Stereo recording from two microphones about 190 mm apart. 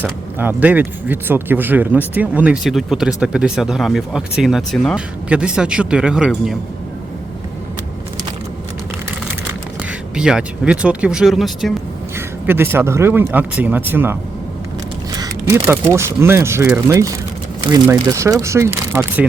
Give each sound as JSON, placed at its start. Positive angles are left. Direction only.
{"t": 0.0, "sound": "speech", "side_deg": -10}
{"t": 10.2, "sound": "speech", "side_deg": -5}
{"t": 12.1, "sound": "speech", "side_deg": -10}
{"t": 15.2, "sound": "speech", "side_deg": -15}